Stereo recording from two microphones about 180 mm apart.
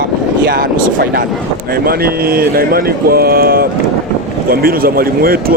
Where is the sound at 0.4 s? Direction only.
55° right (ahead or behind).